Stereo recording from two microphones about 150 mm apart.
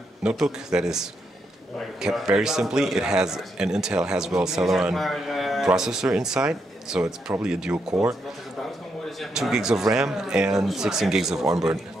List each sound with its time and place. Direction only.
0.2 s a man's voice: 5° right (ahead or behind)
9.2 s a man's voice: 5° right (ahead or behind)
11.4 s speech: 25° right (ahead or behind)